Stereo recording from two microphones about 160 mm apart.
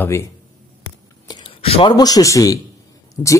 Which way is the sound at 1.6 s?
35° left (ahead or behind).